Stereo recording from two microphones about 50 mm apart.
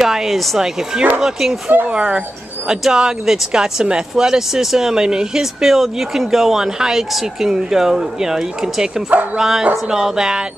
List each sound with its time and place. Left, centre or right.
0.0 s speech: centre
1.9 s speech: centre